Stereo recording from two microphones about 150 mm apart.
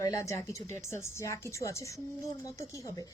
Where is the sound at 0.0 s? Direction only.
20° left (ahead or behind).